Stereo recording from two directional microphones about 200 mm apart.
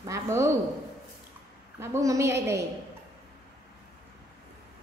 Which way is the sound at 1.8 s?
15° right (ahead or behind).